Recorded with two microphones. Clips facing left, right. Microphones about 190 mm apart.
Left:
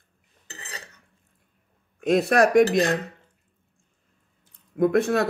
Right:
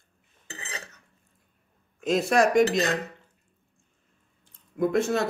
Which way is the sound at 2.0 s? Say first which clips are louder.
Left 3 dB; 60° left (ahead or behind).